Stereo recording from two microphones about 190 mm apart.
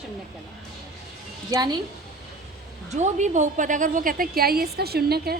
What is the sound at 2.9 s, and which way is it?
A woman's voice, 40° right (ahead or behind).